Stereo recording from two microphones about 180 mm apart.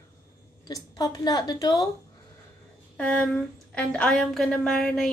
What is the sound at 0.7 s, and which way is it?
A woman's voice, 20° left (ahead or behind).